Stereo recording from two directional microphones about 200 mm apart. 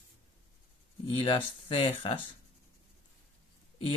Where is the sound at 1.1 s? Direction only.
25° left (ahead or behind).